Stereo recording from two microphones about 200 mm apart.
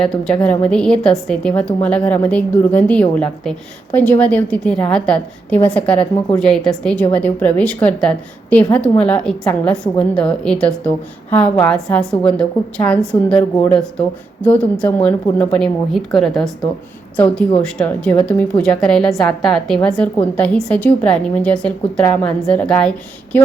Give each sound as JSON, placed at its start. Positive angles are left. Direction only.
{"t": 0.0, "sound": "a woman's voice", "side_deg": 5}
{"t": 14.4, "sound": "a woman's voice", "side_deg": 5}